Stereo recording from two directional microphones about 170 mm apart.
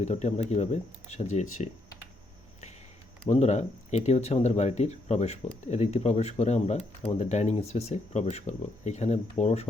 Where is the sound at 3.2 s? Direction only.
40° left (ahead or behind).